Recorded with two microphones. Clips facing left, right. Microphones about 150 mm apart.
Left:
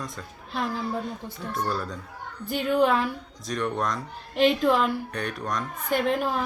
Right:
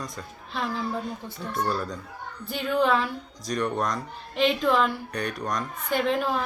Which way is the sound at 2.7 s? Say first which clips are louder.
Left 1 dB; 10° left (ahead or behind).